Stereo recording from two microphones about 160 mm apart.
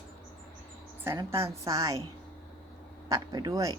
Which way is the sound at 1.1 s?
20° right (ahead or behind).